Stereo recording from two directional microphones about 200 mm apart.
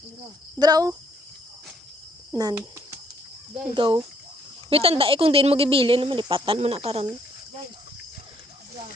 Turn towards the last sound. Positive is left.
turn(degrees=-30)  # may be behind; listen again after turning